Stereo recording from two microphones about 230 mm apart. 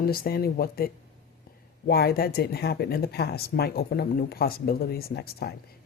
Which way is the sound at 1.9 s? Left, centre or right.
Left.